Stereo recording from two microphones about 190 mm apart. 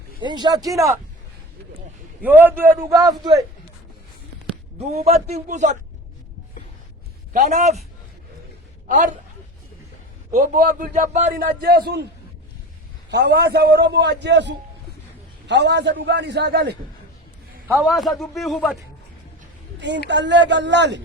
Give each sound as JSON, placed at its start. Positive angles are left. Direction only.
{"t": 0.2, "sound": "a man's voice", "side_deg": -25}
{"t": 2.2, "sound": "a man's voice", "side_deg": -10}
{"t": 4.8, "sound": "a man's voice", "side_deg": -35}
{"t": 7.3, "sound": "a man's voice", "side_deg": -40}
{"t": 10.3, "sound": "a man's voice", "side_deg": -45}
{"t": 13.1, "sound": "a man's voice", "side_deg": -60}
{"t": 17.7, "sound": "a man's voice", "side_deg": 0}
{"t": 20.1, "sound": "speech", "side_deg": -70}